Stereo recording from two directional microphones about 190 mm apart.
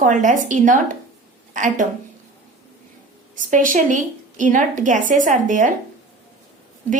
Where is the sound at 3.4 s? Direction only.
45° right (ahead or behind).